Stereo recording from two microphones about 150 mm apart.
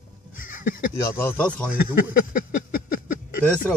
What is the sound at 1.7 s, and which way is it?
Speech, 70° left (ahead or behind).